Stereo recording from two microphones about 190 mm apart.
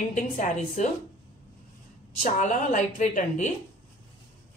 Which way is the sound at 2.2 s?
40° left (ahead or behind).